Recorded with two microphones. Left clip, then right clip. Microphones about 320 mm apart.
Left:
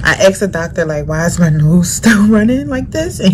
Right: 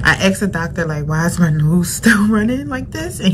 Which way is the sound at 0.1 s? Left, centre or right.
Centre.